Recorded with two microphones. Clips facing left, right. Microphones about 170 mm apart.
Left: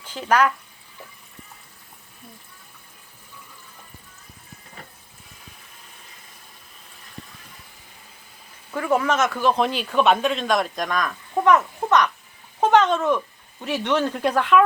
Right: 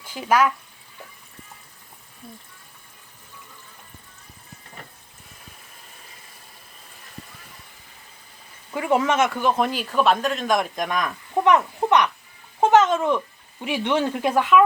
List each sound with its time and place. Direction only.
0.0 s speech: 10° right (ahead or behind)
8.7 s speech: 15° right (ahead or behind)
9.8 s speech: centre (ahead or behind)
10.3 s speech: 10° right (ahead or behind)